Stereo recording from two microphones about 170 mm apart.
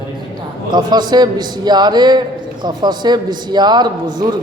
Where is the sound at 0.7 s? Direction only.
25° right (ahead or behind).